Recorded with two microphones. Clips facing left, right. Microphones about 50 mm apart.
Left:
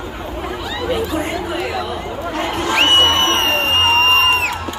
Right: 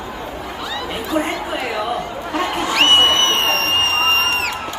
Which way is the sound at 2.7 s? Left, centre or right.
Left.